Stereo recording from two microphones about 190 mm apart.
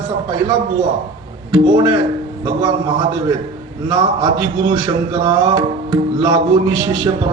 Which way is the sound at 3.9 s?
25° right (ahead or behind).